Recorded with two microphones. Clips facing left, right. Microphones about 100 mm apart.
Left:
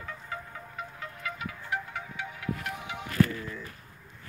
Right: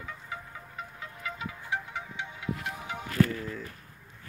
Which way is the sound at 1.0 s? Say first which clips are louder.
Even; 20° right (ahead or behind).